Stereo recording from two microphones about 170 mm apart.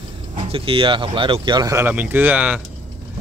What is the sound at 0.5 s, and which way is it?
Speech, 30° right (ahead or behind).